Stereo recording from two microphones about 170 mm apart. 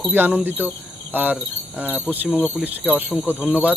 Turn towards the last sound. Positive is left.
turn(degrees=10)  # may be behind; listen again after turning